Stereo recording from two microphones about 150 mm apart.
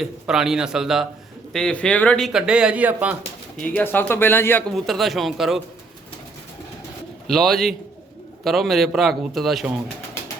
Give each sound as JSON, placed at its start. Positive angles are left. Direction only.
{"t": 0.0, "sound": "speech", "side_deg": -5}
{"t": 3.6, "sound": "speech", "side_deg": 10}
{"t": 4.7, "sound": "speech", "side_deg": 0}
{"t": 7.3, "sound": "speech", "side_deg": 0}